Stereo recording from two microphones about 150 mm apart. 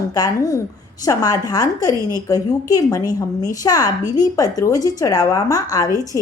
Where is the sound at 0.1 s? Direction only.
20° left (ahead or behind).